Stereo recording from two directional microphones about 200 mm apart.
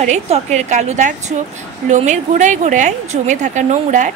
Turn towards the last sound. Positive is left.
turn(degrees=-35)  # may be behind; listen again after turning